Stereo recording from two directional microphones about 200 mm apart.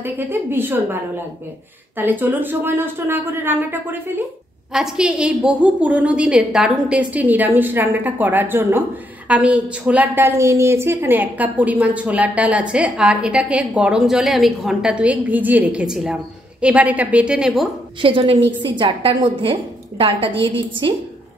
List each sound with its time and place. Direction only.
0.0 s a woman's voice: 10° right (ahead or behind)
18.0 s a woman's voice: 25° right (ahead or behind)